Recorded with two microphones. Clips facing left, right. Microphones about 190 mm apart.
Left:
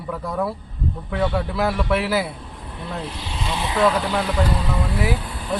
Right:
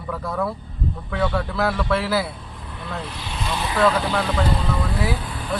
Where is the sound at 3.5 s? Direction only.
20° left (ahead or behind).